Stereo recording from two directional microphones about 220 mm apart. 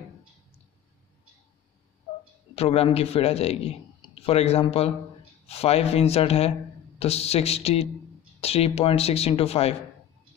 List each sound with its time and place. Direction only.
2.5 s a man's voice: 25° left (ahead or behind)